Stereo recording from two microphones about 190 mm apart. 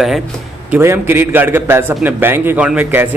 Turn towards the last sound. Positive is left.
turn(degrees=-10)  # may be behind; listen again after turning